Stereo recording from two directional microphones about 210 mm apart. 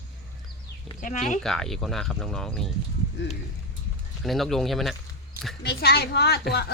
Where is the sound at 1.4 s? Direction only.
Centre (ahead or behind).